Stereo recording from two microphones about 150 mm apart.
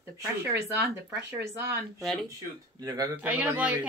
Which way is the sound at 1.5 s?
15° right (ahead or behind).